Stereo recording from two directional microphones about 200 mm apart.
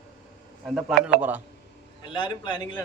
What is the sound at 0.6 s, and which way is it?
Speech, centre (ahead or behind).